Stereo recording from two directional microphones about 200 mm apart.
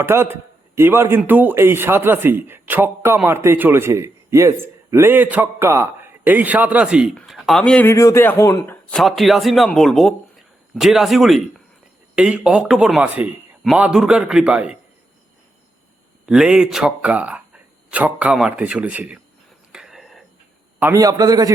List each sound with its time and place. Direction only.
0.0 s a man's voice: 10° right (ahead or behind)
16.2 s speech: 5° right (ahead or behind)
19.7 s whispering: centre (ahead or behind)
20.7 s a man's voice: 15° right (ahead or behind)